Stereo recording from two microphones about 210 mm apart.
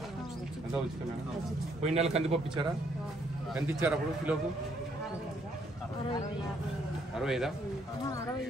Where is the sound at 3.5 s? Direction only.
5° right (ahead or behind).